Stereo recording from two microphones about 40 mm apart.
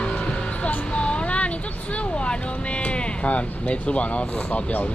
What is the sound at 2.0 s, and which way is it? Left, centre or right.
Speech, left.